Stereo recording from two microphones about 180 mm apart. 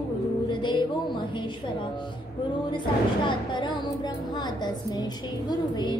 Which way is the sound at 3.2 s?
25° left (ahead or behind).